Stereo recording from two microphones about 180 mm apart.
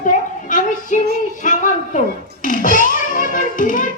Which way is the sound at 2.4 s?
50° left (ahead or behind).